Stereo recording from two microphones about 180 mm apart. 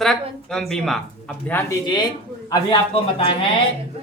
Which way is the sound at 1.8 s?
25° left (ahead or behind).